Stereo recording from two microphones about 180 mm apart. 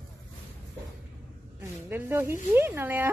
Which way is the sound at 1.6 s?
15° right (ahead or behind).